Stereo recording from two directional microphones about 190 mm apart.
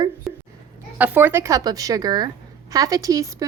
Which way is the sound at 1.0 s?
10° right (ahead or behind).